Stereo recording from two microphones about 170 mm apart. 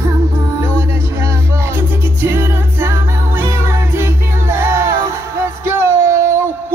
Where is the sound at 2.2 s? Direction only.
15° right (ahead or behind).